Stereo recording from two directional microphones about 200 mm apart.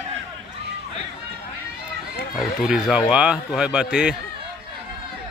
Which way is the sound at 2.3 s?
Centre (ahead or behind).